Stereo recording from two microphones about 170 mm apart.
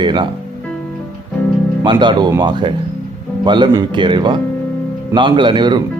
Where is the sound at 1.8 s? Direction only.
25° right (ahead or behind).